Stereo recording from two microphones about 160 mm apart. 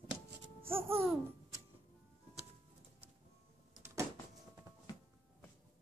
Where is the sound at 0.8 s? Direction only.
35° right (ahead or behind).